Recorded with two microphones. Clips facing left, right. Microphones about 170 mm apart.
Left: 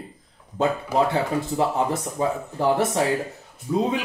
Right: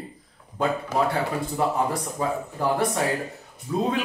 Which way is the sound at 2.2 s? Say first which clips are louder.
Left 3 dB; 20° left (ahead or behind).